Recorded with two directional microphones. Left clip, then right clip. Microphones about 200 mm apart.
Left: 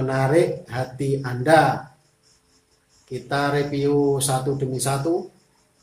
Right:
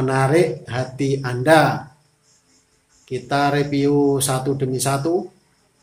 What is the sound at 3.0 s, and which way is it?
Speech, 40° right (ahead or behind).